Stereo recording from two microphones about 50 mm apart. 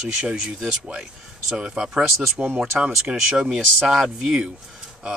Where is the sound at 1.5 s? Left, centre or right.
Centre.